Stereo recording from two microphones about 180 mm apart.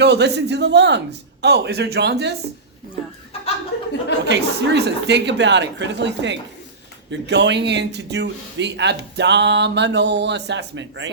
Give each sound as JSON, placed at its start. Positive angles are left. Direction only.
{"t": 0.0, "sound": "speech", "side_deg": -70}
{"t": 4.3, "sound": "speech", "side_deg": -70}